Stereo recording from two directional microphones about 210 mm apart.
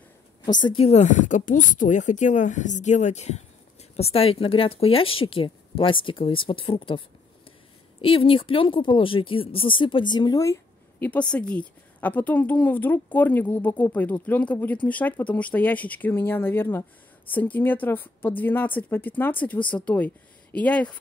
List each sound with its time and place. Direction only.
0.5 s speech: 20° left (ahead or behind)
8.0 s speech: 25° left (ahead or behind); by 21.0 s 5° left (ahead or behind)